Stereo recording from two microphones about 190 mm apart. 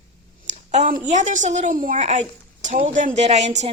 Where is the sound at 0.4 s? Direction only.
35° right (ahead or behind).